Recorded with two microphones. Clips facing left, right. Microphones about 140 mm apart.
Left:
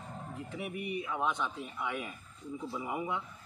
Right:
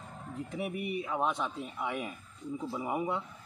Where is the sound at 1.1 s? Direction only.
35° right (ahead or behind).